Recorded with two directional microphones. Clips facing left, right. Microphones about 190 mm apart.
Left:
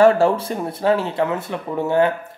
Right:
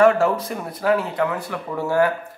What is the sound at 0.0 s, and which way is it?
Speech, 30° left (ahead or behind).